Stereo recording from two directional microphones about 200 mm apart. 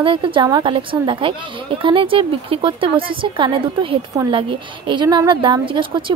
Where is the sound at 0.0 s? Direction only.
25° right (ahead or behind).